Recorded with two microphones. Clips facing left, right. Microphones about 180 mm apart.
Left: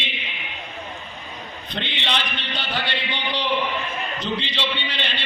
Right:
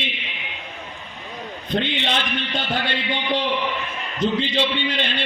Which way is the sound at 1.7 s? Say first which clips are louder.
Right 6 dB; 45° right (ahead or behind).